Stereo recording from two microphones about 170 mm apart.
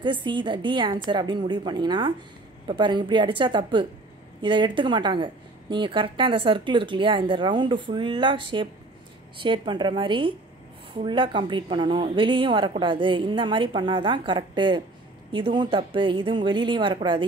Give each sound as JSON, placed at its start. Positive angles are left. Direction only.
{"t": 0.0, "sound": "speech", "side_deg": -30}